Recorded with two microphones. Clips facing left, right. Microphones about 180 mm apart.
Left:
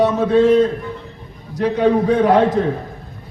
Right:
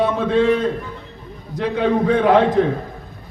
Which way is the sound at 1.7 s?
40° left (ahead or behind).